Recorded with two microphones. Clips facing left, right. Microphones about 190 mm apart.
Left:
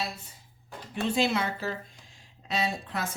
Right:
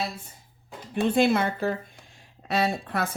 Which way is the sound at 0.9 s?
55° right (ahead or behind).